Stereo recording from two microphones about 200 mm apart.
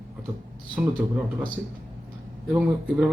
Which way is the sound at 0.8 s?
5° right (ahead or behind).